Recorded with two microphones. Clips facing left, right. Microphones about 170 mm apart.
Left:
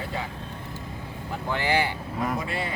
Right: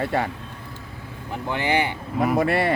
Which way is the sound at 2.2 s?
65° right (ahead or behind).